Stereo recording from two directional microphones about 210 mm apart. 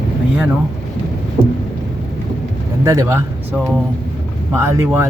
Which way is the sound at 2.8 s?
15° right (ahead or behind).